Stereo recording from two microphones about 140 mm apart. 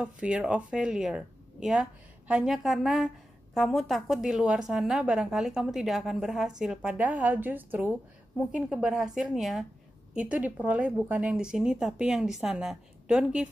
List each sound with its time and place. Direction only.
0.0 s a woman's voice: 10° right (ahead or behind)